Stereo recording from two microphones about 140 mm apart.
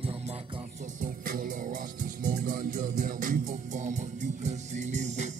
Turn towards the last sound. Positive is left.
turn(degrees=-55)  # may be behind; listen again after turning